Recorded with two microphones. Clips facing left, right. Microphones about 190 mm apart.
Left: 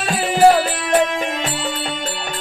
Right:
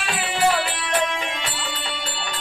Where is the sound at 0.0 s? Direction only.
40° left (ahead or behind).